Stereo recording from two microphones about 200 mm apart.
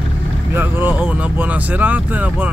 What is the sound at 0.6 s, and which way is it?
Speech, 10° right (ahead or behind).